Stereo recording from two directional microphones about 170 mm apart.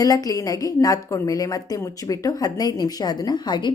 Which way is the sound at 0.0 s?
20° left (ahead or behind).